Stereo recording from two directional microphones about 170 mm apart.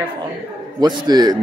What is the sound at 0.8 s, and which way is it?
Speech, 25° right (ahead or behind).